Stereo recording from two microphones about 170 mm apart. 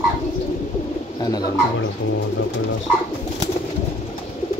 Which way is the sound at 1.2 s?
20° left (ahead or behind).